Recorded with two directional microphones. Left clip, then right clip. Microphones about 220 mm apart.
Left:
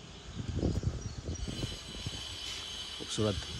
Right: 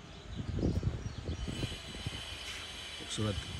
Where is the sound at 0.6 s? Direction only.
25° right (ahead or behind).